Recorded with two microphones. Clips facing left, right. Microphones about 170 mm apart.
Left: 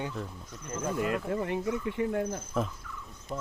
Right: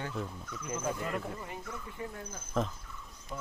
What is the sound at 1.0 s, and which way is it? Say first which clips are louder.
Speech: left 7 dB; 90° left.